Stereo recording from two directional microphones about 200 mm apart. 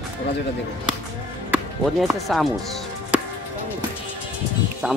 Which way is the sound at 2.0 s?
Centre (ahead or behind).